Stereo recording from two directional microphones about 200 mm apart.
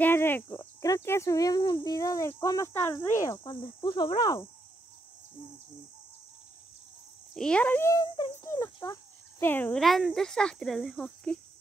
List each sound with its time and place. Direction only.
0.0 s speech: 10° left (ahead or behind)
7.3 s speech: 5° left (ahead or behind)